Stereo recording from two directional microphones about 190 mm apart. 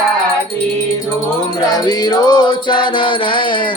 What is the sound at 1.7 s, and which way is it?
Music, 20° left (ahead or behind).